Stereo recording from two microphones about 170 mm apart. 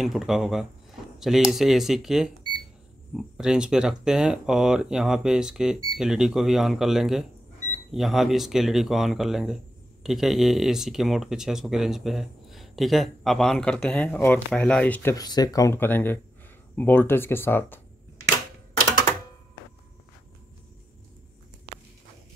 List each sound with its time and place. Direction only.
0.0 s speech: centre (ahead or behind)